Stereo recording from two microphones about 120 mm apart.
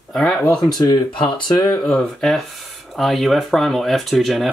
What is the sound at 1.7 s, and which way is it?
Speech, 5° left (ahead or behind).